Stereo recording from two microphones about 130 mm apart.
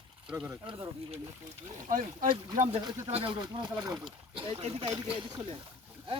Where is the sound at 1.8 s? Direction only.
80° right.